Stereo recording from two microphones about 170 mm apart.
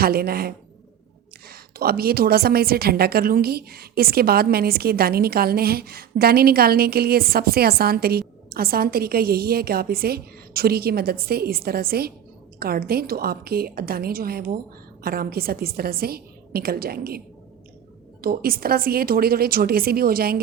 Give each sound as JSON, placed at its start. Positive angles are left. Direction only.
{"t": 0.0, "sound": "a woman's voice", "side_deg": -65}
{"t": 18.2, "sound": "a woman's voice", "side_deg": -60}